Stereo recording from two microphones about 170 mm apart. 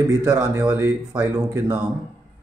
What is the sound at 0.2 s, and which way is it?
Speech, 15° right (ahead or behind).